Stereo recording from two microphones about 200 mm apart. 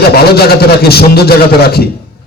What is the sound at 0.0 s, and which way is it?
A man's voice, 50° left (ahead or behind).